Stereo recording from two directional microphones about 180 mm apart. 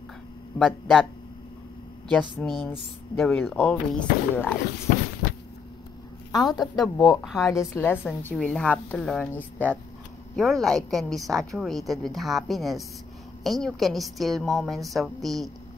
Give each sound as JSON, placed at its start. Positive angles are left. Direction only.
{"t": 0.6, "sound": "a woman's voice", "side_deg": 5}
{"t": 2.0, "sound": "a woman's voice", "side_deg": 5}
{"t": 6.3, "sound": "a woman's voice", "side_deg": 20}
{"t": 6.8, "sound": "a woman's voice", "side_deg": 0}
{"t": 7.7, "sound": "a woman's voice", "side_deg": 10}